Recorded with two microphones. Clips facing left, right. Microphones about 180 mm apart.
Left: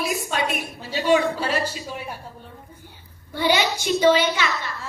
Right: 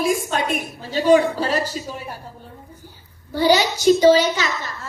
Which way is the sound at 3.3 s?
40° right (ahead or behind).